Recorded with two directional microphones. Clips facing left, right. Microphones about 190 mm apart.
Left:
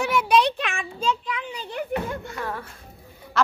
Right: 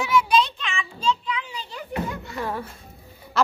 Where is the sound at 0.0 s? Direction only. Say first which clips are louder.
Left 1 dB; 65° left (ahead or behind).